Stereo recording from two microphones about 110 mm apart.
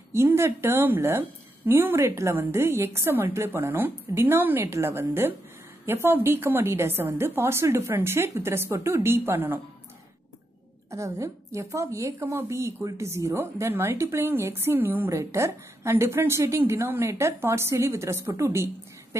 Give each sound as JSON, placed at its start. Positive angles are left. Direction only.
{"t": 0.1, "sound": "a woman's voice", "side_deg": -25}
{"t": 10.9, "sound": "a woman's voice", "side_deg": -25}